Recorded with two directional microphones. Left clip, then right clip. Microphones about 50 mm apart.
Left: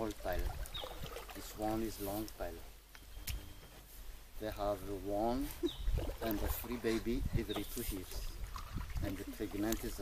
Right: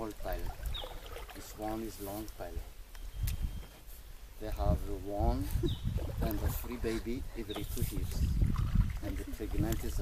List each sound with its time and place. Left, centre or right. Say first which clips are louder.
0.0 s boat: even; left
4.4 s speech: even; left
5.6 s speech: right 2 dB; right
5.9 s speech: even; left